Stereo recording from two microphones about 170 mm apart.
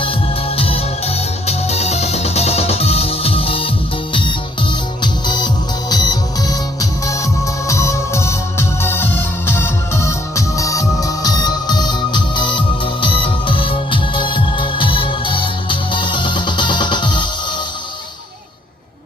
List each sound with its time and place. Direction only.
0.5 s music: 35° left (ahead or behind)
5.2 s music: 25° left (ahead or behind)